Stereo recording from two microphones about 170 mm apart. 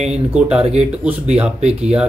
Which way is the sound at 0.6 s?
40° right (ahead or behind).